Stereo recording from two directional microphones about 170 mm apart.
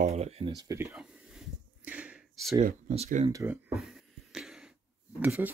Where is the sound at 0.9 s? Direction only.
5° right (ahead or behind).